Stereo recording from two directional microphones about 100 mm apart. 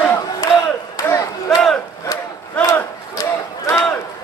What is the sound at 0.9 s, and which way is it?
Crowd, 35° left (ahead or behind).